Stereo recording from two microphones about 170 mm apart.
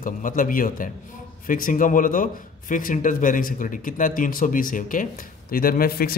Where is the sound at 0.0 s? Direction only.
50° left (ahead or behind).